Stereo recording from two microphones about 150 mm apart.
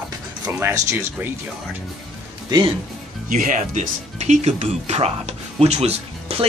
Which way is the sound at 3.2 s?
60° right (ahead or behind).